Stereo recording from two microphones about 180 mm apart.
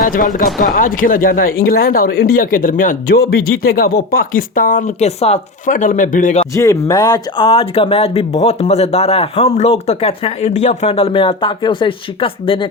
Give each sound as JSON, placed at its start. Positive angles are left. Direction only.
{"t": 0.0, "sound": "speech", "side_deg": 50}
{"t": 6.5, "sound": "speech", "side_deg": 20}